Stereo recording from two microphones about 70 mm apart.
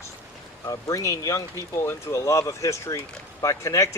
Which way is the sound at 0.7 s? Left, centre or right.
Left.